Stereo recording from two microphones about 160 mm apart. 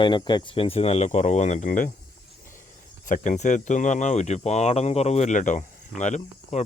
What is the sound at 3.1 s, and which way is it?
Speech, 50° left (ahead or behind).